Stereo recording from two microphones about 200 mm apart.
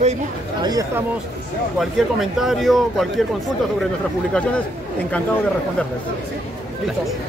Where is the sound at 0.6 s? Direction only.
20° right (ahead or behind).